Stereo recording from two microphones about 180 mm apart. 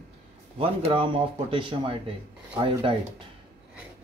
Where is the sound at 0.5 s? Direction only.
30° right (ahead or behind).